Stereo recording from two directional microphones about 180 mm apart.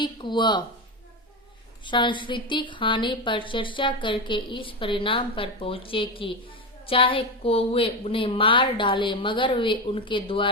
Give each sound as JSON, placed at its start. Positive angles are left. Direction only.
{"t": 0.0, "sound": "a woman's voice", "side_deg": 25}
{"t": 1.8, "sound": "a woman's voice", "side_deg": 25}